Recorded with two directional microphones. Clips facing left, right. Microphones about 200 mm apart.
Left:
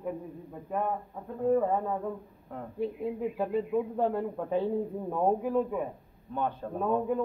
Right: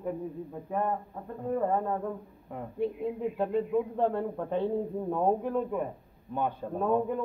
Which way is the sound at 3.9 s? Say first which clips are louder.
Even; 5° left (ahead or behind).